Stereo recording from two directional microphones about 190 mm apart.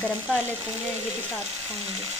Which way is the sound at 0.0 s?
10° left (ahead or behind).